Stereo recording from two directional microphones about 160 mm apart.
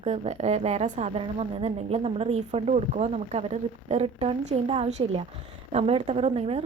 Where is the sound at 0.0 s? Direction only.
45° right (ahead or behind).